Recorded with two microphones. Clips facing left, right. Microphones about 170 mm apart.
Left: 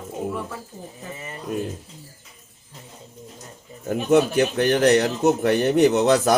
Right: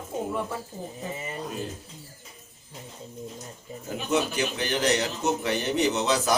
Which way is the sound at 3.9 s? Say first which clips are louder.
Left 8 dB; 55° left (ahead or behind).